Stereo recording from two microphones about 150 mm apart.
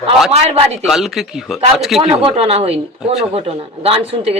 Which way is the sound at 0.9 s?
Centre (ahead or behind).